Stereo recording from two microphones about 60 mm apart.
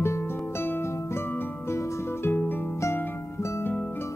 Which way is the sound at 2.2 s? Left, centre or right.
Left.